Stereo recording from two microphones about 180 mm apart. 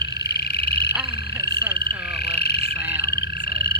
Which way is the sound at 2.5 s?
65° left (ahead or behind).